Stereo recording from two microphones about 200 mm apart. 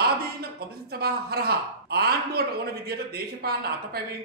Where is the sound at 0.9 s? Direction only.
50° right (ahead or behind).